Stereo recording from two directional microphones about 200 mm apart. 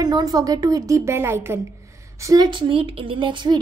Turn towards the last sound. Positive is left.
turn(degrees=-25)  # may be behind; listen again after turning